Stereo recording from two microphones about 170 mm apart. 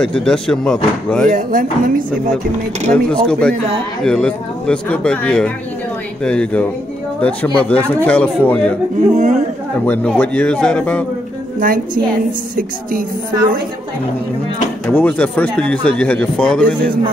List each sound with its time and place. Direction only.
0.0 s speech: 5° left (ahead or behind)
1.2 s speech: 50° right (ahead or behind)
2.9 s speech: 5° left (ahead or behind)
9.1 s speech: 45° right (ahead or behind)
9.8 s speech: 10° left (ahead or behind)
11.6 s a woman's voice: 55° right (ahead or behind)
14.9 s speech: 10° left (ahead or behind)